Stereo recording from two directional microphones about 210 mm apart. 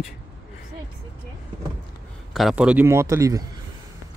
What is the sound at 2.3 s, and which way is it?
A man's voice, centre (ahead or behind).